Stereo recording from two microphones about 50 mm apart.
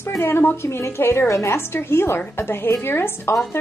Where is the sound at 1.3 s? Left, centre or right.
Left.